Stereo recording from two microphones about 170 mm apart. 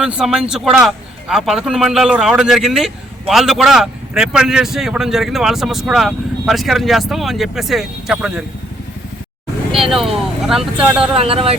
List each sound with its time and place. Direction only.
0.0 s speech: 5° right (ahead or behind)
9.9 s speech: centre (ahead or behind)
11.1 s speech: 35° right (ahead or behind)